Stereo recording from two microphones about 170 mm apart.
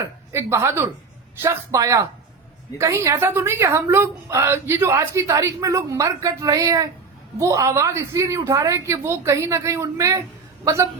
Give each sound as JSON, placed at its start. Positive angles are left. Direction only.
{"t": 0.3, "sound": "a woman's voice", "side_deg": -15}